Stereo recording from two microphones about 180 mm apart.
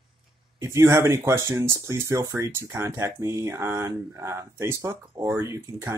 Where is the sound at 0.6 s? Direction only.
15° right (ahead or behind).